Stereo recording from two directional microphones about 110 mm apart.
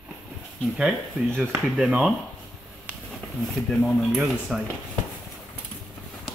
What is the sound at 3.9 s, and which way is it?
Speech, centre (ahead or behind).